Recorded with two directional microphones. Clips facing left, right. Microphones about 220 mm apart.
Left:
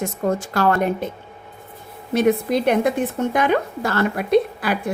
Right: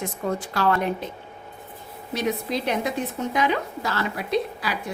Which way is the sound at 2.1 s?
50° left (ahead or behind).